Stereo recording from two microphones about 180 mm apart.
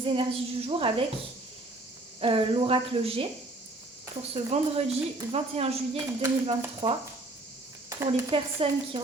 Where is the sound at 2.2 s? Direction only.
30° right (ahead or behind).